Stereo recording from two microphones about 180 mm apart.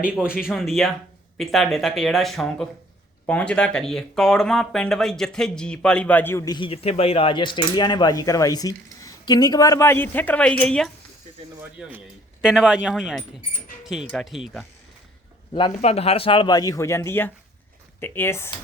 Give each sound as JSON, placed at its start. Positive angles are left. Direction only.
{"t": 0.0, "sound": "speech", "side_deg": -5}
{"t": 11.8, "sound": "speech", "side_deg": -5}
{"t": 15.5, "sound": "speech", "side_deg": 30}